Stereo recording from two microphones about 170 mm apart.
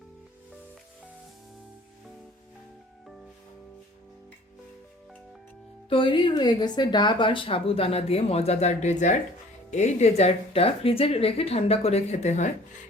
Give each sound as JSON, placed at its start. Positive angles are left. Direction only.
{"t": 5.9, "sound": "a woman's voice", "side_deg": 30}